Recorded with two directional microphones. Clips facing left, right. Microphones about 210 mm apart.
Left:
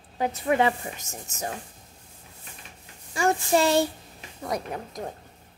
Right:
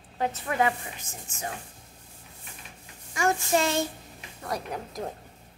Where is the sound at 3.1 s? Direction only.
30° left (ahead or behind).